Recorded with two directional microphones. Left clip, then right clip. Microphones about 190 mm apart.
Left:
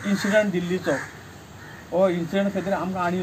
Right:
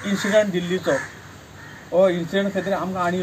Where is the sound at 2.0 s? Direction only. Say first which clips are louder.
Right 3 dB; 10° left (ahead or behind).